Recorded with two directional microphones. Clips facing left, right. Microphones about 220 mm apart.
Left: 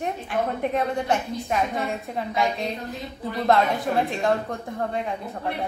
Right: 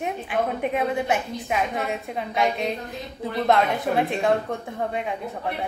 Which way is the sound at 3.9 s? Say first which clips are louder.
Right 1 dB; 5° right (ahead or behind).